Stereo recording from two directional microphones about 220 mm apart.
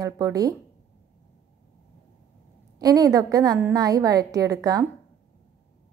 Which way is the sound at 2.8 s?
15° right (ahead or behind).